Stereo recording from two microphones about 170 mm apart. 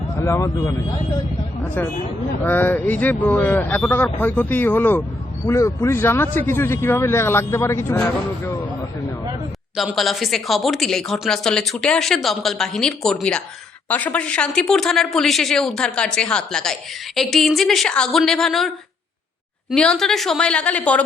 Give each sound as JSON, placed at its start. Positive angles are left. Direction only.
{"t": 0.2, "sound": "speech", "side_deg": 15}
{"t": 9.7, "sound": "speech", "side_deg": 0}
{"t": 19.7, "sound": "speech", "side_deg": 5}